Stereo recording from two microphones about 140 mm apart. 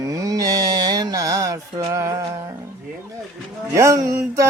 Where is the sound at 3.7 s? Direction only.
20° right (ahead or behind).